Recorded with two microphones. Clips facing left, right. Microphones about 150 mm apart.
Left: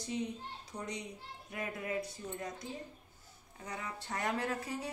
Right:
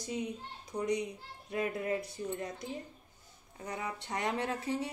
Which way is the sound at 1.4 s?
25° right (ahead or behind).